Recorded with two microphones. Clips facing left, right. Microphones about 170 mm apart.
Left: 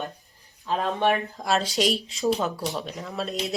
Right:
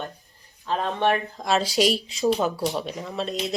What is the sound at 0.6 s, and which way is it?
Speech, centre (ahead or behind).